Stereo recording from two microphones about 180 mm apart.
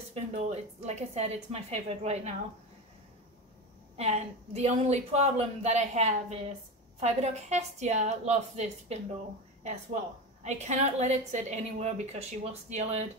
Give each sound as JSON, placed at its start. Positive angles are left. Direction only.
{"t": 0.1, "sound": "a woman's voice", "side_deg": -35}
{"t": 3.9, "sound": "a woman's voice", "side_deg": -35}
{"t": 10.4, "sound": "a woman's voice", "side_deg": -40}